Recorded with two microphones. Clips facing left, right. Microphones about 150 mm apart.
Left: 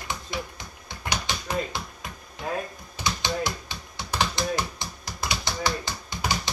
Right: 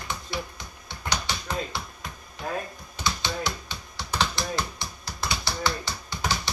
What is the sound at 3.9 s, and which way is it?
Typing, 15° left (ahead or behind).